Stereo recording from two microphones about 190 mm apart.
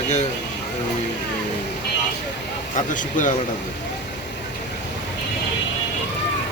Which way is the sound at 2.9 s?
45° left (ahead or behind).